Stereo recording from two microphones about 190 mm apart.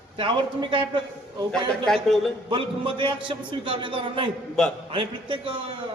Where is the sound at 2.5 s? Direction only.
25° right (ahead or behind).